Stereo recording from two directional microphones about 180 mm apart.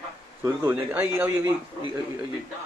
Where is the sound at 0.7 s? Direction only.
10° right (ahead or behind).